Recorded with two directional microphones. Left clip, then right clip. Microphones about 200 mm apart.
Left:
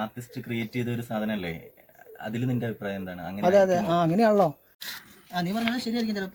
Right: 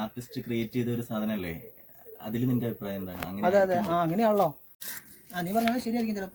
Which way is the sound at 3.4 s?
35° left (ahead or behind).